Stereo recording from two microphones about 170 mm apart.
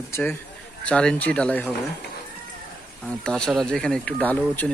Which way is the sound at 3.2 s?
5° left (ahead or behind).